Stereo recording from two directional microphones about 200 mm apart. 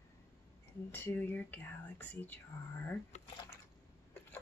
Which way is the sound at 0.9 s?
10° left (ahead or behind).